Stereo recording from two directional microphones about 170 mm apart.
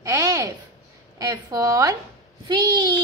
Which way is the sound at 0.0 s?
20° right (ahead or behind).